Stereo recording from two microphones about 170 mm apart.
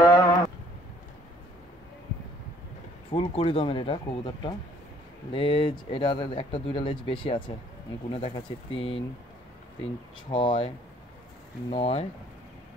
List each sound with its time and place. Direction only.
0.0 s a sound: 20° left (ahead or behind)
3.1 s speech: 30° left (ahead or behind)
10.3 s speech: 30° left (ahead or behind)
11.7 s speech: 35° left (ahead or behind)